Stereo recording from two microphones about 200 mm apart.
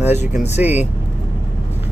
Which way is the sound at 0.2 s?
35° left (ahead or behind).